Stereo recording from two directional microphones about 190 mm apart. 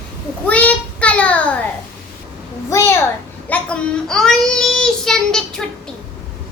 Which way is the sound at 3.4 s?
5° left (ahead or behind).